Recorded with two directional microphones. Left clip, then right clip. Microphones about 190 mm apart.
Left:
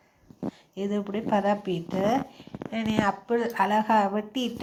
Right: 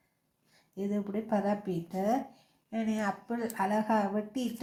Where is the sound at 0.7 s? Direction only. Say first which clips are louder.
Left 4 dB; 15° left (ahead or behind).